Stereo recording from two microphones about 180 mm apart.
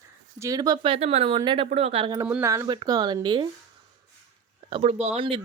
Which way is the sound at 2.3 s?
15° right (ahead or behind).